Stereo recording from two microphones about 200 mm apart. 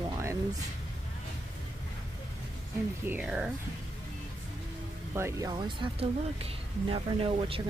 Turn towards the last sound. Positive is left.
turn(degrees=-30)  # may be behind; listen again after turning